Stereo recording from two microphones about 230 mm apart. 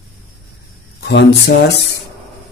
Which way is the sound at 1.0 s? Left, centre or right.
Left.